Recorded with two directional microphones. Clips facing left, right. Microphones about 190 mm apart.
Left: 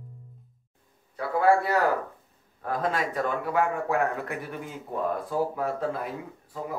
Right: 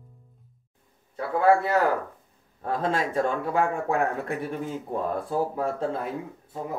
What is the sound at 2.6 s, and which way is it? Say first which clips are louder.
Speech: right 2 dB; 25° right (ahead or behind).